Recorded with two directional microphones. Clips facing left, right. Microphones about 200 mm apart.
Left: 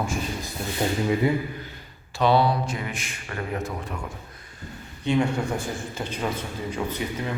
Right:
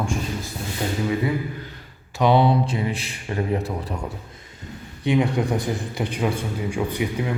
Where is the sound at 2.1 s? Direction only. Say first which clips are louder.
Right 3 dB; 20° right (ahead or behind); by 4.0 s 35° right (ahead or behind).